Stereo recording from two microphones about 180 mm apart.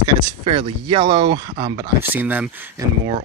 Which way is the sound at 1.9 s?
10° right (ahead or behind).